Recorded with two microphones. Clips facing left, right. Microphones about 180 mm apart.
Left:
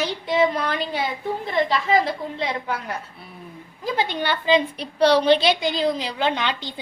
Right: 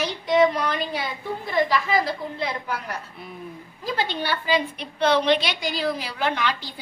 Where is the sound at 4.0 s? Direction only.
20° left (ahead or behind).